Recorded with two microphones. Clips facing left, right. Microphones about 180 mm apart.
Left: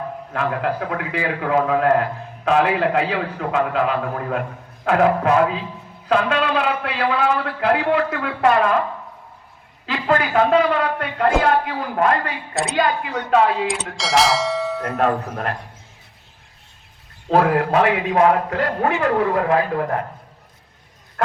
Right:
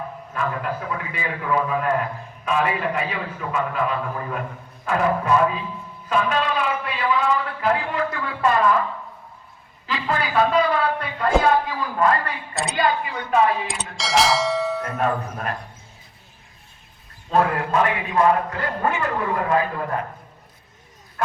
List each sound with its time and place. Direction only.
0.3 s a man's voice: 70° left (ahead or behind)
9.8 s a man's voice: 70° left (ahead or behind)
13.9 s speech: centre (ahead or behind)
14.9 s a man's voice: 70° left (ahead or behind)
17.2 s a man's voice: 70° left (ahead or behind)